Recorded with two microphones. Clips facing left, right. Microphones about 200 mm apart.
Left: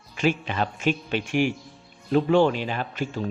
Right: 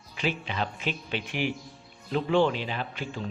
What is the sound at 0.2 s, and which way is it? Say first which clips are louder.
Speech: left 6 dB; 50° left (ahead or behind).